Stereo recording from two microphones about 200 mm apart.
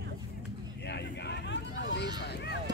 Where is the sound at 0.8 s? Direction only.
60° left (ahead or behind).